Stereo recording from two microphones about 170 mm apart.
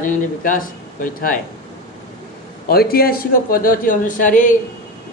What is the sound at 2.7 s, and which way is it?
Speech, 65° left (ahead or behind).